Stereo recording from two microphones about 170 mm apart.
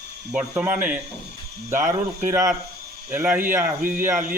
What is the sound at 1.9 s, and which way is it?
Speech, 15° right (ahead or behind).